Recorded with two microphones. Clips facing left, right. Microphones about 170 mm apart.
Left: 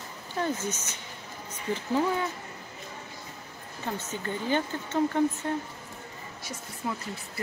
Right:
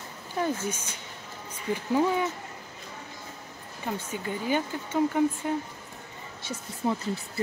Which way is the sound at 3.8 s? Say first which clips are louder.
Right 1 dB; 10° right (ahead or behind).